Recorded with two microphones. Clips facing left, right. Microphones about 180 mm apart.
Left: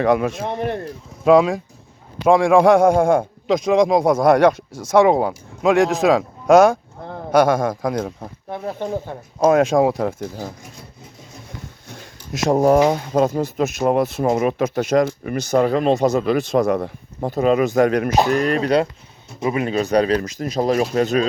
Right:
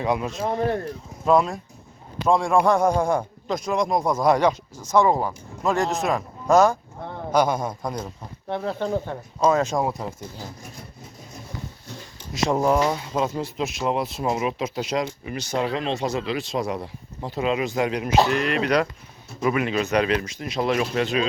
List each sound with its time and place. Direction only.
0.4 s speech: 20° left (ahead or behind)
1.2 s speech: 85° left
2.9 s speech: 55° left (ahead or behind)
3.4 s speech: 90° left
8.4 s speech: 10° left (ahead or behind)
9.5 s speech: 80° left
10.2 s speech: 60° left (ahead or behind)
12.3 s speech: 40° left (ahead or behind)